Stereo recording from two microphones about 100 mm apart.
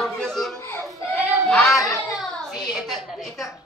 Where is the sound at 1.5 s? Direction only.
5° left (ahead or behind).